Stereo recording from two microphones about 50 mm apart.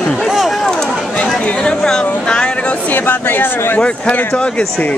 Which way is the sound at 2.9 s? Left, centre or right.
Left.